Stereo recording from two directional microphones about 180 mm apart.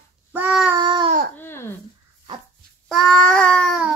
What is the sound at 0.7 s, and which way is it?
Baby cry, 25° right (ahead or behind).